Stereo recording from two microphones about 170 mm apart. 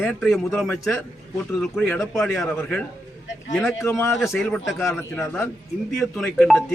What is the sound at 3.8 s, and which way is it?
Speech, 15° left (ahead or behind).